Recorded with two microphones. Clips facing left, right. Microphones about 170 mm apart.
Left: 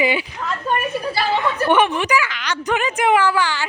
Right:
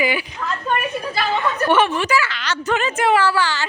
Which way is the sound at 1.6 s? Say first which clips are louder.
Even; 15° left (ahead or behind).